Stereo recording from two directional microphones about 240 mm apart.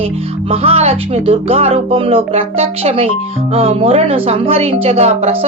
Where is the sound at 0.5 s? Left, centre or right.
Right.